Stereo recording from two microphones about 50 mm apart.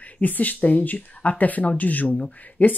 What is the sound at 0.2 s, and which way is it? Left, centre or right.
Speech, left.